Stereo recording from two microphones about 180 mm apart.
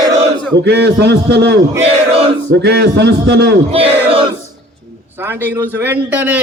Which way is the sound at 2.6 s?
70° right (ahead or behind).